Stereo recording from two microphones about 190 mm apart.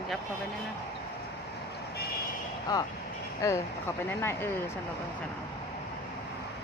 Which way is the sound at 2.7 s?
20° left (ahead or behind).